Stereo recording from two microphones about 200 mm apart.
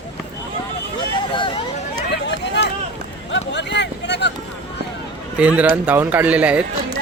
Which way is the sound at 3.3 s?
60° left (ahead or behind).